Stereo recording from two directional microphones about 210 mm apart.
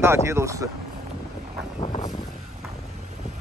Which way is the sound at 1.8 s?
25° left (ahead or behind).